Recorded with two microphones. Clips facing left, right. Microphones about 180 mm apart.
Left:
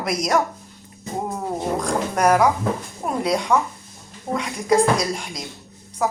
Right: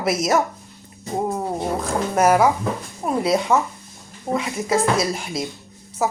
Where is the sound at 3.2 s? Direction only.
5° right (ahead or behind).